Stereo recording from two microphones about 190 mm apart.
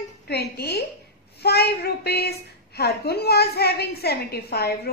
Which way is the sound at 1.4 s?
60° left (ahead or behind).